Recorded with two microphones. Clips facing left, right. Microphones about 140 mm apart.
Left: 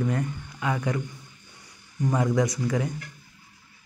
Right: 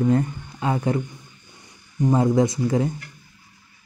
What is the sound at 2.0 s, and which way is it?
Speech, 25° right (ahead or behind).